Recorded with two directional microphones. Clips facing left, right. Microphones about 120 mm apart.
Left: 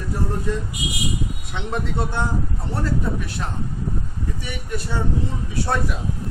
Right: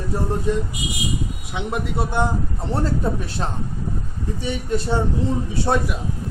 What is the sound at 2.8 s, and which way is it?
Speech, 30° right (ahead or behind).